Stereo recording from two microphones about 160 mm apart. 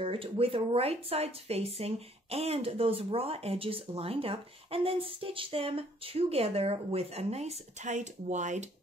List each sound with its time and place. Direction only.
0.0 s speech: 35° right (ahead or behind)